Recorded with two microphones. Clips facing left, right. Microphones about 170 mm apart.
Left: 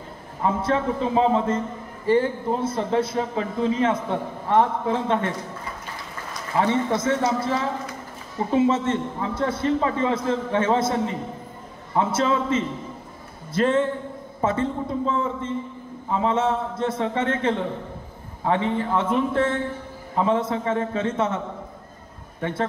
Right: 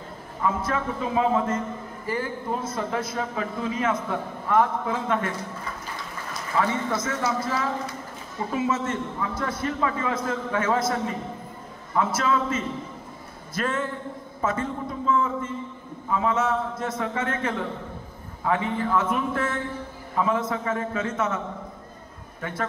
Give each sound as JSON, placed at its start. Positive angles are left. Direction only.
{"t": 0.4, "sound": "a man's voice", "side_deg": 30}
{"t": 6.6, "sound": "a man's voice", "side_deg": 30}
{"t": 22.4, "sound": "a man's voice", "side_deg": 30}